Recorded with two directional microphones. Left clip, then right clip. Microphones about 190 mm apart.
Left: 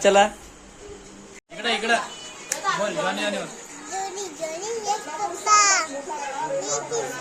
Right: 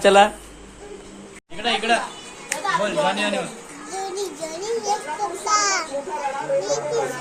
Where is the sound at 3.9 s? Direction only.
5° left (ahead or behind).